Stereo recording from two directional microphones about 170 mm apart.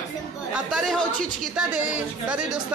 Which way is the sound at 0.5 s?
Centre (ahead or behind).